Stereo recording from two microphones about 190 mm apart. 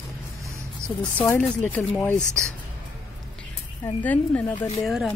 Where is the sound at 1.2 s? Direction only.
10° left (ahead or behind).